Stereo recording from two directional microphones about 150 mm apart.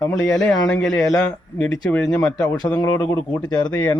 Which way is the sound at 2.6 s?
25° left (ahead or behind).